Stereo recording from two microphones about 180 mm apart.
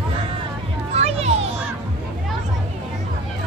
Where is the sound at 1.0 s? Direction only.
35° right (ahead or behind).